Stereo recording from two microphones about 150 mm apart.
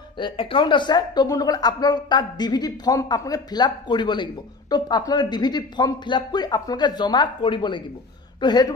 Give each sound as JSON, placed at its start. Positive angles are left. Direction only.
{"t": 0.2, "sound": "a woman's voice", "side_deg": 35}